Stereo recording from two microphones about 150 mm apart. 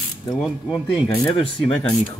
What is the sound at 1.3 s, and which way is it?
Speech, 40° left (ahead or behind).